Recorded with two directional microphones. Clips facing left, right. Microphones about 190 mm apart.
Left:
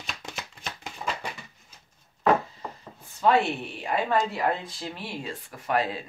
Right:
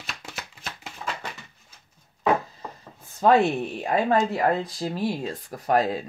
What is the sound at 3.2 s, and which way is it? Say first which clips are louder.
Speech: right 4 dB; 45° right (ahead or behind).